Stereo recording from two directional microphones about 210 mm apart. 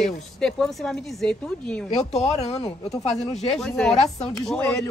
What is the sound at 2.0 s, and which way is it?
Speech, 30° left (ahead or behind).